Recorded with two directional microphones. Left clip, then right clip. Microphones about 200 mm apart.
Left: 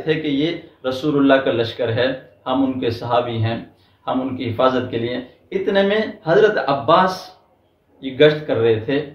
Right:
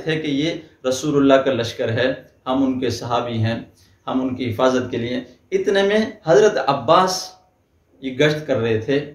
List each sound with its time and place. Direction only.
0.0 s a man's voice: 25° right (ahead or behind)